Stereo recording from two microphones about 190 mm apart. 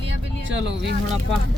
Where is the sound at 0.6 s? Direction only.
65° right (ahead or behind).